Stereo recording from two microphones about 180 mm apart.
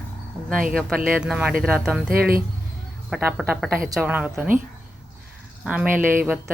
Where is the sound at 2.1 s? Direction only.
55° right (ahead or behind).